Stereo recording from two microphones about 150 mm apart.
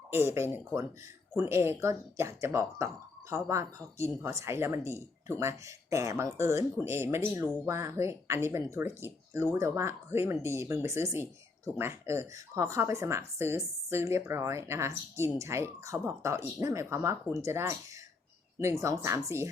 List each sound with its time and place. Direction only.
0.1 s speech: 15° right (ahead or behind)